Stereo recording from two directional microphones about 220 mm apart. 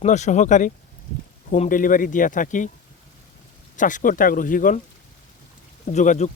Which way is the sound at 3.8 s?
35° left (ahead or behind).